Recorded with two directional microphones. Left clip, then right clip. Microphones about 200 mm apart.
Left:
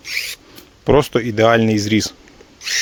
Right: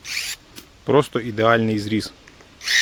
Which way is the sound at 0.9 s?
35° left (ahead or behind).